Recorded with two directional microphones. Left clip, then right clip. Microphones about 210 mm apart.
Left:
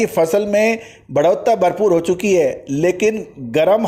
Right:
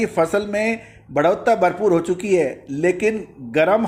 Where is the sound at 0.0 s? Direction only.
30° left (ahead or behind).